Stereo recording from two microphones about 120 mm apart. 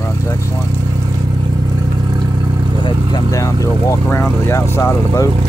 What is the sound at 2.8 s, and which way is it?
Vehicle, 35° left (ahead or behind).